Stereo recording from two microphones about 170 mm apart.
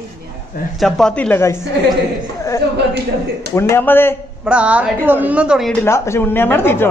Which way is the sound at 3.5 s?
15° left (ahead or behind).